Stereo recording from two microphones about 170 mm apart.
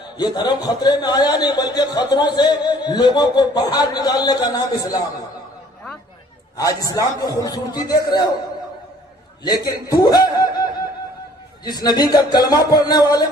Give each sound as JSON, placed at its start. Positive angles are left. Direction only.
{"t": 0.2, "sound": "speech", "side_deg": 25}
{"t": 6.6, "sound": "speech", "side_deg": 20}
{"t": 9.4, "sound": "a man's voice", "side_deg": 25}